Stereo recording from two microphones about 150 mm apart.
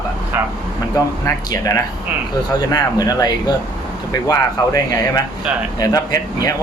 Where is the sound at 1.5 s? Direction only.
20° left (ahead or behind).